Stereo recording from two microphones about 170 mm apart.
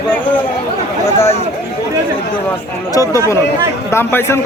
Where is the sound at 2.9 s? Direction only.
15° left (ahead or behind).